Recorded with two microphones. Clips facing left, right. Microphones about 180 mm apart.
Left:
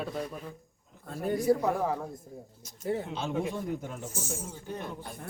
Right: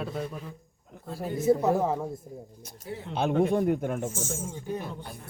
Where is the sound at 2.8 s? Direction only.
50° left (ahead or behind).